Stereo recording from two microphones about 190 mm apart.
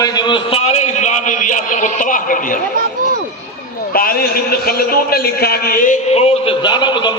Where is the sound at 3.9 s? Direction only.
50° left (ahead or behind).